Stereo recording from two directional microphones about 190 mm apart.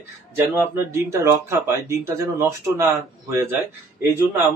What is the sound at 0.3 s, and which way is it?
Speech, 10° right (ahead or behind).